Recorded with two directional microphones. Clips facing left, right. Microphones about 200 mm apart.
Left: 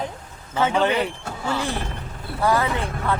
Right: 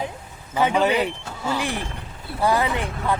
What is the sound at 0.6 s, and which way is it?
Speech, 15° right (ahead or behind).